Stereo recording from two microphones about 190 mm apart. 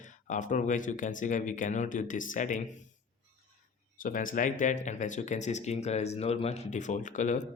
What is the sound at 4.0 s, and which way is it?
Speech, 45° left (ahead or behind).